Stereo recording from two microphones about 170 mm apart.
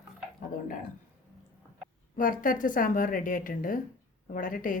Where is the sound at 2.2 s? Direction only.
50° left (ahead or behind).